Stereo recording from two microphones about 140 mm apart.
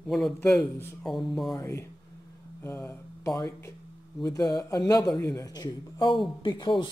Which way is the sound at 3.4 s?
20° left (ahead or behind).